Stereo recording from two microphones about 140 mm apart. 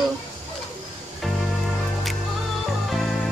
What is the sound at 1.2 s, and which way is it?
Music, centre (ahead or behind).